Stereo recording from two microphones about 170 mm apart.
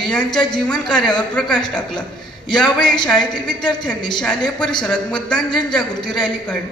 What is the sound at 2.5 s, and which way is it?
A man's voice, 5° left (ahead or behind).